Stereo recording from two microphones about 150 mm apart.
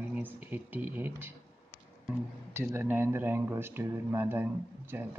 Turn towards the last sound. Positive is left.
turn(degrees=-15)  # may be behind; listen again after turning